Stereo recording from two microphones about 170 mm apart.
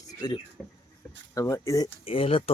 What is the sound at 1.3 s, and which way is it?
Speech, 20° left (ahead or behind).